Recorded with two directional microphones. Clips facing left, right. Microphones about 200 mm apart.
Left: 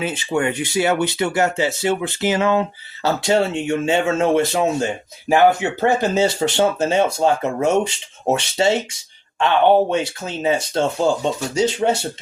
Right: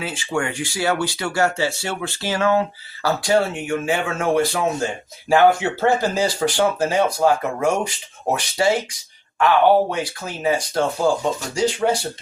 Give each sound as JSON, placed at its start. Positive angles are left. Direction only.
{"t": 0.0, "sound": "speech", "side_deg": 20}